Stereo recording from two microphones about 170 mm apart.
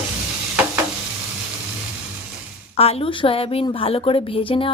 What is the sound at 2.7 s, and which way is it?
A woman's voice, 35° left (ahead or behind).